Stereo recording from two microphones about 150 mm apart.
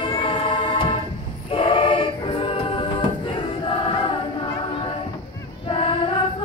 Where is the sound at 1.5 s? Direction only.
35° left (ahead or behind).